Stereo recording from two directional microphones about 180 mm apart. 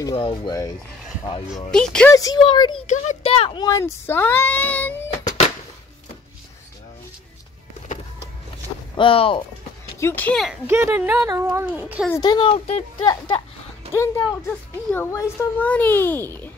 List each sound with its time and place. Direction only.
0.1 s speech: 25° left (ahead or behind)
1.5 s speech: 5° left (ahead or behind)
2.1 s a child's voice: 20° left (ahead or behind)
3.6 s a child's voice: 15° left (ahead or behind)
8.9 s speech: 30° left (ahead or behind)
9.9 s a child's voice: 10° left (ahead or behind)
10.7 s a child's voice: 10° right (ahead or behind)
12.1 s a child's voice: 25° left (ahead or behind)